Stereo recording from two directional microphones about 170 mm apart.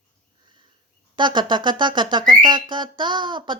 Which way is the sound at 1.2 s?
25° right (ahead or behind).